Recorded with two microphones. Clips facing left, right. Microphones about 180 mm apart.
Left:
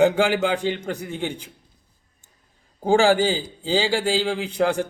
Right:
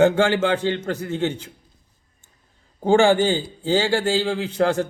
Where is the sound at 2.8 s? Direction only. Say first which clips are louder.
Right 1 dB; 10° left (ahead or behind).